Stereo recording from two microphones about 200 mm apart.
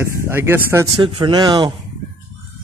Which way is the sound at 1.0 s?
25° right (ahead or behind).